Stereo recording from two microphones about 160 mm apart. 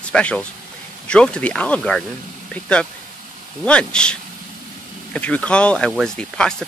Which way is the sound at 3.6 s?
5° left (ahead or behind).